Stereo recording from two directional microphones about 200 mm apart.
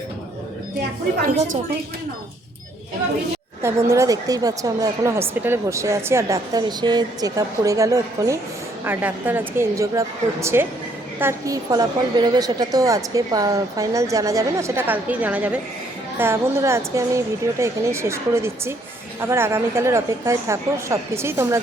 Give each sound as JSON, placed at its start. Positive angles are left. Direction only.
{"t": 3.6, "sound": "a woman's voice", "side_deg": -15}